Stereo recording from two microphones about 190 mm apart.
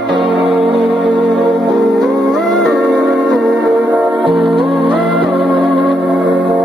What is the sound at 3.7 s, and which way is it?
Music, centre (ahead or behind).